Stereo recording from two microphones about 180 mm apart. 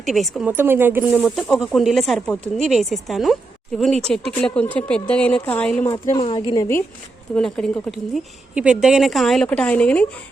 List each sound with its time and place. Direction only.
0.0 s a woman's voice: centre (ahead or behind)
0.5 s a woman's voice: 10° right (ahead or behind); by 5.9 s 5° left (ahead or behind)
6.1 s speech: 35° left (ahead or behind)
6.6 s a woman's voice: 15° left (ahead or behind)